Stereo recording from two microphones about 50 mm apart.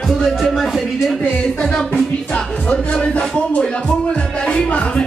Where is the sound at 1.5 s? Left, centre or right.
Left.